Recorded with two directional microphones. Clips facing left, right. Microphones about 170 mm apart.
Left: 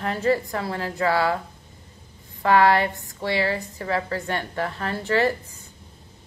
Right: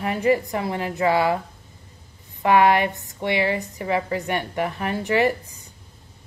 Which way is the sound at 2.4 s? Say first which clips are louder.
Right 1 dB; 15° right (ahead or behind).